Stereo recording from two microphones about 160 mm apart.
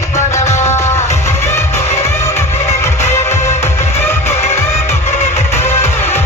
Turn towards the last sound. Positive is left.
turn(degrees=45)  # may be behind; listen again after turning